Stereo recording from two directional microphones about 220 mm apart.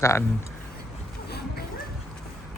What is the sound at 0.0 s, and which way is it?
Speech, 15° left (ahead or behind).